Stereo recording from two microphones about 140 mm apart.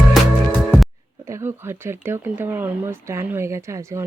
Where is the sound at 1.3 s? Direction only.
20° right (ahead or behind).